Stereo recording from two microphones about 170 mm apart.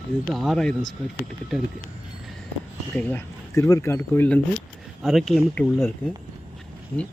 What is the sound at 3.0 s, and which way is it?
Speech, 10° left (ahead or behind).